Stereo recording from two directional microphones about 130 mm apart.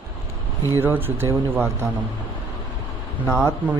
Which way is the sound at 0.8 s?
15° right (ahead or behind).